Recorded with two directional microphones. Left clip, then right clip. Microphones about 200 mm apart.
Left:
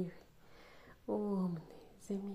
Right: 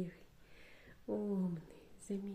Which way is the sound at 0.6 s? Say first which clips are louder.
Left 1 dB; 10° right (ahead or behind).